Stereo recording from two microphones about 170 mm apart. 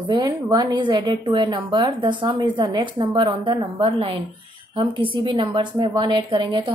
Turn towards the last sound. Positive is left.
turn(degrees=-25)  # may be behind; listen again after turning